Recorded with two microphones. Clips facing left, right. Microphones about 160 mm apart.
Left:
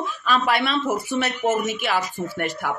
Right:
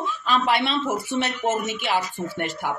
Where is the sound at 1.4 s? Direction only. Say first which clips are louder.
Left 2 dB; 15° left (ahead or behind).